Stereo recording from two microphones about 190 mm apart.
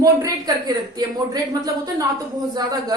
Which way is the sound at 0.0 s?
20° right (ahead or behind).